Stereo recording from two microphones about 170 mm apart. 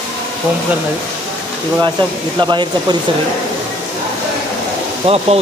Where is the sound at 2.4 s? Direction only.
25° right (ahead or behind).